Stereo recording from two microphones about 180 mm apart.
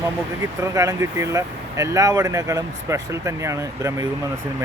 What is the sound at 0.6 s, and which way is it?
Speech, 15° right (ahead or behind).